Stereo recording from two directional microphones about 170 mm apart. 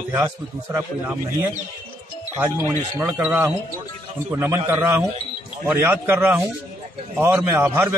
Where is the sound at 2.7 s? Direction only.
15° right (ahead or behind).